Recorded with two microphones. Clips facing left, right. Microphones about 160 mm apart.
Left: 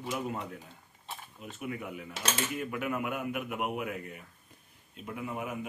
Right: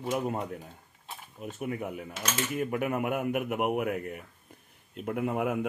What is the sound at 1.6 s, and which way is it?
Speech, 45° right (ahead or behind).